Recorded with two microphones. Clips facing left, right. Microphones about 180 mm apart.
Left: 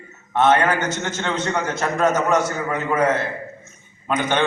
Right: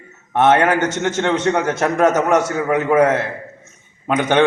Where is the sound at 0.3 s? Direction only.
70° right (ahead or behind).